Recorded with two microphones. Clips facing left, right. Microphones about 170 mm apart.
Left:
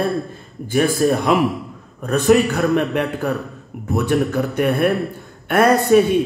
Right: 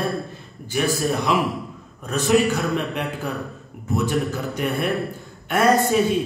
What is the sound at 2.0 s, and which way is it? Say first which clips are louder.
A man's voice: left 4 dB; 60° left (ahead or behind).